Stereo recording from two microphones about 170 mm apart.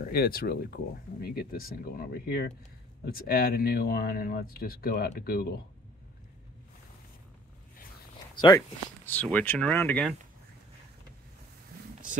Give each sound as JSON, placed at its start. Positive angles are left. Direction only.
{"t": 0.0, "sound": "speech", "side_deg": 60}
{"t": 8.4, "sound": "speech", "side_deg": 25}
{"t": 9.0, "sound": "speech", "side_deg": 10}